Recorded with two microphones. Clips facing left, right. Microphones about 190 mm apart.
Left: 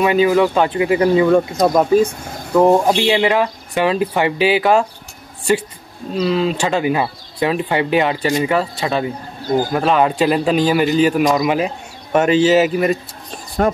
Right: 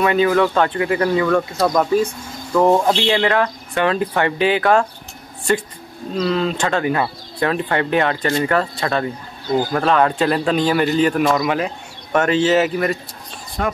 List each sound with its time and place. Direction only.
0.0 s a man's voice: 15° left (ahead or behind)
6.1 s a man's voice: 10° left (ahead or behind)
13.6 s speech: 45° left (ahead or behind)